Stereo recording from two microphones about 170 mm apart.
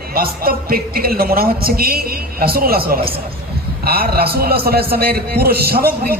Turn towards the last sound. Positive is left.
turn(degrees=-60)  # may be behind; listen again after turning